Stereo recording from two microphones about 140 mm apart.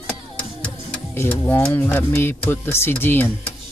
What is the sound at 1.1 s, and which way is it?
Speech, 15° left (ahead or behind).